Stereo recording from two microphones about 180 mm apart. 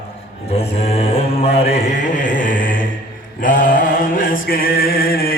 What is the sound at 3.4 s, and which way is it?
Mantra, 50° left (ahead or behind).